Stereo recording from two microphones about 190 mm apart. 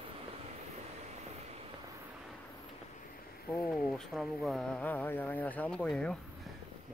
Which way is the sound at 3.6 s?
5° left (ahead or behind).